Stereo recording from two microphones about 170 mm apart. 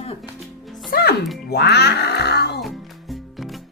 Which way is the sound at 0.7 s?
Centre (ahead or behind).